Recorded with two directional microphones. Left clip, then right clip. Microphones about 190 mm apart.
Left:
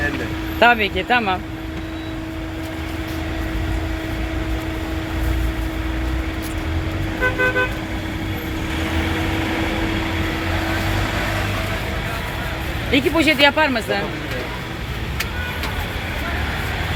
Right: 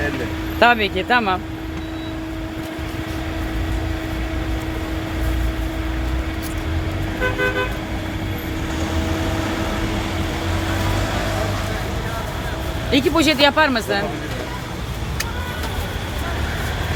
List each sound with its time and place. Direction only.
0.6 s speech: 5° right (ahead or behind)
12.9 s speech: 5° right (ahead or behind)